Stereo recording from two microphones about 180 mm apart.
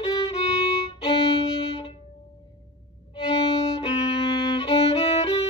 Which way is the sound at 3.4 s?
30° left (ahead or behind).